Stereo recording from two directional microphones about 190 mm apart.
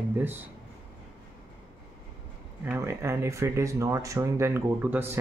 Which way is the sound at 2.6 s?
10° right (ahead or behind).